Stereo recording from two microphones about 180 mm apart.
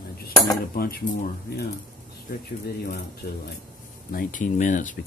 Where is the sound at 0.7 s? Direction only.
55° left (ahead or behind).